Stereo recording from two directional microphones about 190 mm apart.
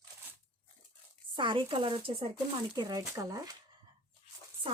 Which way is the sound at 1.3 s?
25° right (ahead or behind).